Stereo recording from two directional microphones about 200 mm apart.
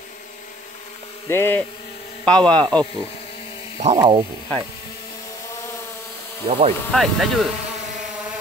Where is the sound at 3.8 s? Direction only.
35° right (ahead or behind).